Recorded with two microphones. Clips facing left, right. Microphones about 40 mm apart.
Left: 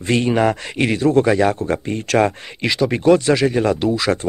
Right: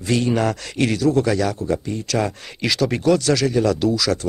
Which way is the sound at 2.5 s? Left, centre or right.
Centre.